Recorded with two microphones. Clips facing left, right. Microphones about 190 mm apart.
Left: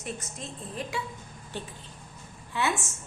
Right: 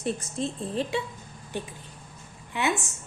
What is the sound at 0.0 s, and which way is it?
A woman's voice, 30° right (ahead or behind).